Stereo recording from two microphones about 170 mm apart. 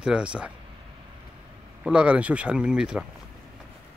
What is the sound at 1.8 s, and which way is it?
Speech, 5° right (ahead or behind).